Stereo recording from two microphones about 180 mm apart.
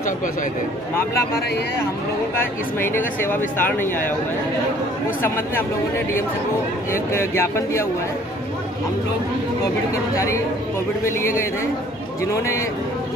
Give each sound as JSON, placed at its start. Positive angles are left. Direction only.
{"t": 2.3, "sound": "speech", "side_deg": 10}
{"t": 5.2, "sound": "speech", "side_deg": 10}
{"t": 6.9, "sound": "speech", "side_deg": 15}
{"t": 10.1, "sound": "speech", "side_deg": 15}